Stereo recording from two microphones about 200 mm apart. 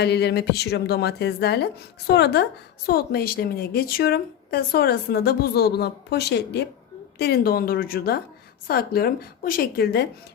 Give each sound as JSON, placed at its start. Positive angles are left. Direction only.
{"t": 0.0, "sound": "a woman's voice", "side_deg": 55}